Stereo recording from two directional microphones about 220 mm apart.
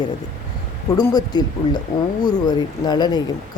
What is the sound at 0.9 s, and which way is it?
Speech, 20° left (ahead or behind).